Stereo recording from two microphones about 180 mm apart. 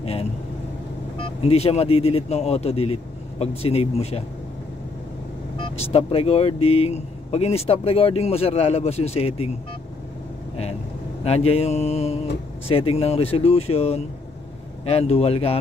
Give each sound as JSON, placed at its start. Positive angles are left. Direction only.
{"t": 0.0, "sound": "vehicle", "side_deg": 35}
{"t": 1.4, "sound": "speech", "side_deg": 35}
{"t": 5.6, "sound": "speech", "side_deg": 30}
{"t": 11.2, "sound": "speech", "side_deg": 35}